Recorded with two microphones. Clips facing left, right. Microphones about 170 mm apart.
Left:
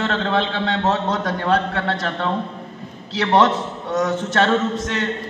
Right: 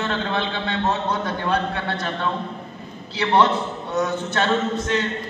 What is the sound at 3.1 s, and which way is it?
A man's voice, 90° left.